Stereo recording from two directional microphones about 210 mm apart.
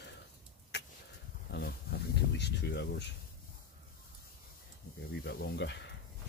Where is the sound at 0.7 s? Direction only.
55° left (ahead or behind).